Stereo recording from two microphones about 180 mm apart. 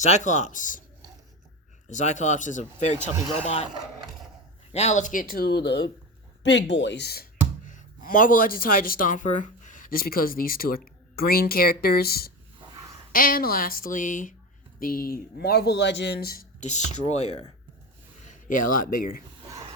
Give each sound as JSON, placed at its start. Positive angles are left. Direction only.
{"t": 0.0, "sound": "speech", "side_deg": 40}
{"t": 1.9, "sound": "a man's voice", "side_deg": 40}
{"t": 4.7, "sound": "speech", "side_deg": 40}
{"t": 6.4, "sound": "speech", "side_deg": 80}
{"t": 18.3, "sound": "speech", "side_deg": 50}